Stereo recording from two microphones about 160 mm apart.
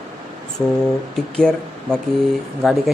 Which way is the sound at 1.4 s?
5° left (ahead or behind).